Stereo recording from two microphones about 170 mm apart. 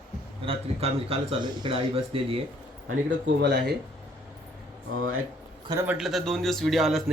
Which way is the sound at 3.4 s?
75° right (ahead or behind).